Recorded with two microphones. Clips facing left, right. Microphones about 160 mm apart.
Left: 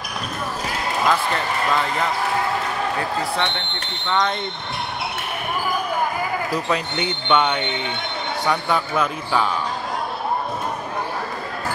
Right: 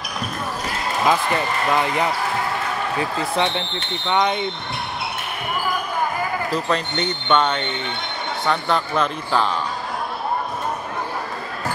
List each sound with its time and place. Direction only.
1.0 s speech: 15° right (ahead or behind)
6.5 s speech: 10° left (ahead or behind)